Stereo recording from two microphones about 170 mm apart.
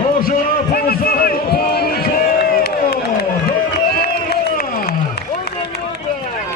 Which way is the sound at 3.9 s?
65° left (ahead or behind).